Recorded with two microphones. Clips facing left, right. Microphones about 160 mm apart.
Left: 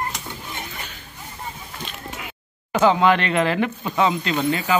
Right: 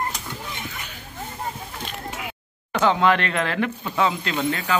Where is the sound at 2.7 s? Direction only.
5° left (ahead or behind).